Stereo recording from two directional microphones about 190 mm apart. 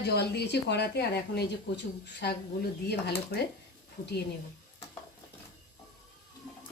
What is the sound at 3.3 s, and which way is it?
Speech, 55° left (ahead or behind).